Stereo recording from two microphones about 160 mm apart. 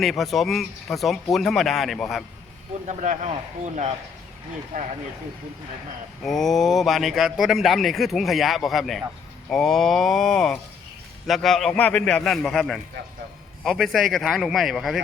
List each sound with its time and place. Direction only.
0.0 s a man's voice: centre (ahead or behind)
2.8 s speech: 50° right (ahead or behind)
6.2 s a man's voice: centre (ahead or behind)